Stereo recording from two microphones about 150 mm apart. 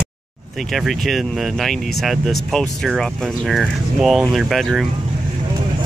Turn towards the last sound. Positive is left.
turn(degrees=0)  # may be behind; listen again after turning